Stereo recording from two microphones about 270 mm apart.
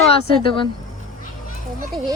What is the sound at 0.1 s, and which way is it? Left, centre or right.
Speech, centre.